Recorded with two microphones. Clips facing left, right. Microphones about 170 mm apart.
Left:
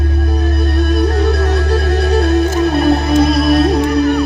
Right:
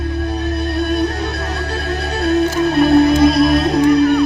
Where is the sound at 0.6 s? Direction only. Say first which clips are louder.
Left 2 dB; 45° left (ahead or behind).